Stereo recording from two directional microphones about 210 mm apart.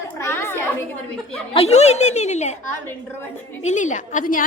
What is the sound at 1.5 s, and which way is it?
A woman's voice, 30° left (ahead or behind).